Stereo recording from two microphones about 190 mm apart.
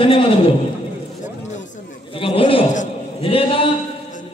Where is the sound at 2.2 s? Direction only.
30° left (ahead or behind).